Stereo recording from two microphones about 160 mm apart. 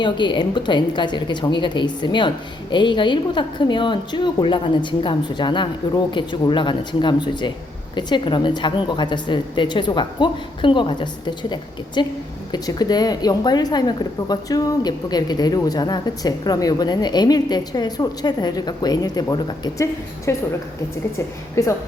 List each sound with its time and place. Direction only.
0.0 s speech: 30° left (ahead or behind)
21.5 s a woman's voice: 20° left (ahead or behind)